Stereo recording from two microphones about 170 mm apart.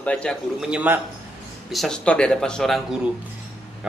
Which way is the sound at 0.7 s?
10° right (ahead or behind).